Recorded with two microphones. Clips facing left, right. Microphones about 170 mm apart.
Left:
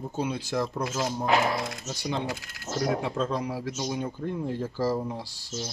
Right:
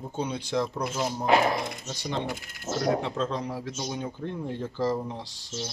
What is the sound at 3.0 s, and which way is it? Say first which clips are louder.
Speech: left 1 dB; 10° left (ahead or behind).